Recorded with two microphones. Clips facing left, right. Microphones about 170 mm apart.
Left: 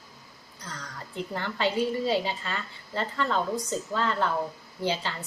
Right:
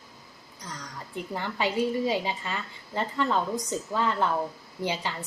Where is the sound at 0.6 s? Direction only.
15° right (ahead or behind).